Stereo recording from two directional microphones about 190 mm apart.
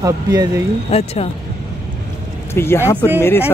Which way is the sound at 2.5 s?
10° left (ahead or behind).